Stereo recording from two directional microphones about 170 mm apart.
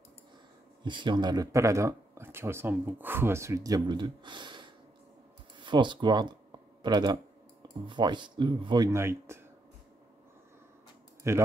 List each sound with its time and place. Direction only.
0.8 s speech: 25° right (ahead or behind)
11.3 s speech: 15° right (ahead or behind)